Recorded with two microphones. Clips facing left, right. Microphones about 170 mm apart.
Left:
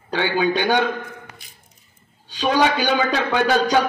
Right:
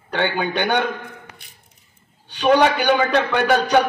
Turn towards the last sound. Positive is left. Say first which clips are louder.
# right 1 dB
turn(degrees=-60)  # may be behind; listen again after turning